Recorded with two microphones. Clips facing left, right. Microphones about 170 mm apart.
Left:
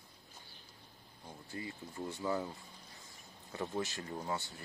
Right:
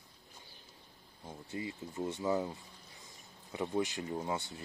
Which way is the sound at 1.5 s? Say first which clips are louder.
Right 4 dB; 20° right (ahead or behind).